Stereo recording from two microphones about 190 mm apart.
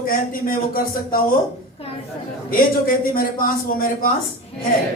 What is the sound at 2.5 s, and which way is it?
Speech, 50° left (ahead or behind).